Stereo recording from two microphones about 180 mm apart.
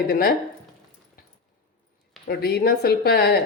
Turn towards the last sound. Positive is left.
turn(degrees=60)  # may be behind; listen again after turning